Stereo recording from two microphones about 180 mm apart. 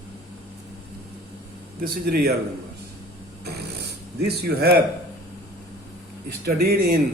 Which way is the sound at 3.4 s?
65° right (ahead or behind).